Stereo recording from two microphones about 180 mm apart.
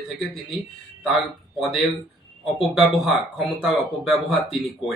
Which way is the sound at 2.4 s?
Centre (ahead or behind).